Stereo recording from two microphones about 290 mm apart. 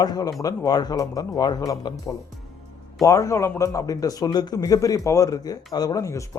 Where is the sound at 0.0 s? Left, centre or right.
Centre.